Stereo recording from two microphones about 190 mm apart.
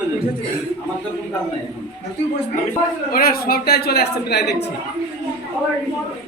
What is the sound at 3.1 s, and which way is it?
A woman's voice, 50° left (ahead or behind).